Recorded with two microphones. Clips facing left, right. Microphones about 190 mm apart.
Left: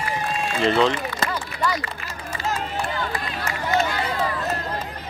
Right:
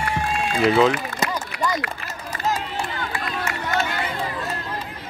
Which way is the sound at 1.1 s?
45° right (ahead or behind).